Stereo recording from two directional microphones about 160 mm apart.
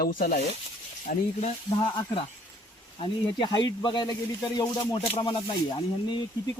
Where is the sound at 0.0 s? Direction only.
60° left (ahead or behind).